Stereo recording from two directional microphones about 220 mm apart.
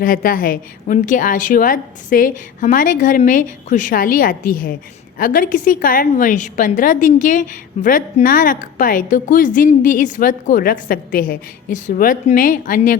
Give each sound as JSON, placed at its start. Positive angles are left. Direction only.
{"t": 0.0, "sound": "a woman's voice", "side_deg": 40}